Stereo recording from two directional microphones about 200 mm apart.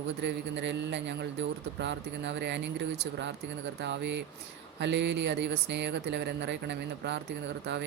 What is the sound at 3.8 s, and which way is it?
Speech, 60° right (ahead or behind).